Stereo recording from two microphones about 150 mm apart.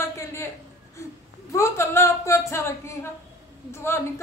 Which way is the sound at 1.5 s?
20° left (ahead or behind).